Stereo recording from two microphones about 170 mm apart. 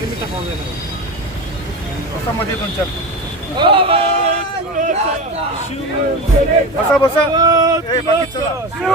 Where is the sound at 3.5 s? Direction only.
30° right (ahead or behind).